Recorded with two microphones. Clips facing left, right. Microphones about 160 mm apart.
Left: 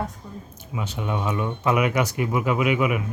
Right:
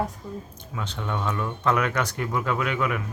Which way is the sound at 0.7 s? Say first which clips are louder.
Left 3 dB; 10° left (ahead or behind).